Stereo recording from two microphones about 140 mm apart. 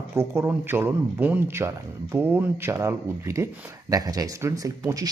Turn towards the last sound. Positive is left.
turn(degrees=-25)  # may be behind; listen again after turning